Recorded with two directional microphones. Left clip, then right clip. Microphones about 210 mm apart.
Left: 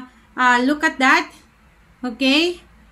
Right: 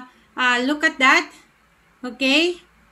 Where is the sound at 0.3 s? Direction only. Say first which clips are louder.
Left 3 dB; 5° left (ahead or behind).